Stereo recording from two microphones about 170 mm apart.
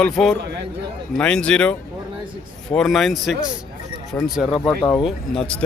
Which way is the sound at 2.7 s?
Centre (ahead or behind).